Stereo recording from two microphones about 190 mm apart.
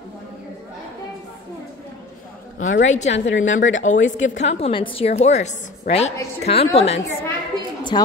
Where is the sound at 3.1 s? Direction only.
75° left (ahead or behind).